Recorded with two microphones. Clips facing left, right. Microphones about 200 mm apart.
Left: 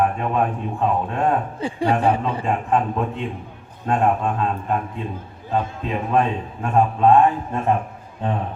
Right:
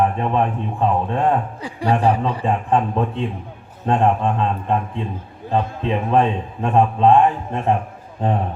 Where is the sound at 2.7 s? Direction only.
30° right (ahead or behind).